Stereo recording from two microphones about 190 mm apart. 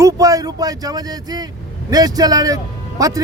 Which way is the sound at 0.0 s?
20° right (ahead or behind).